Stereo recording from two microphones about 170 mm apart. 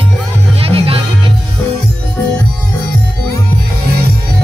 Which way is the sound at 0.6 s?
35° right (ahead or behind).